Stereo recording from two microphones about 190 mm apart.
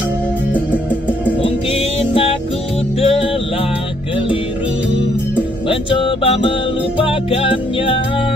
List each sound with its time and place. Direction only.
1.4 s music: 30° left (ahead or behind)
5.7 s music: 30° left (ahead or behind)